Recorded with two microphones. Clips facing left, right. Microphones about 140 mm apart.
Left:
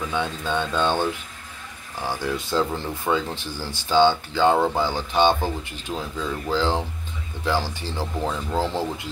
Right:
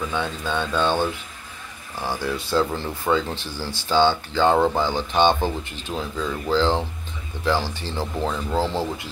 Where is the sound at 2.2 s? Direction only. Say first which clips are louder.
Right 2 dB; 15° left (ahead or behind).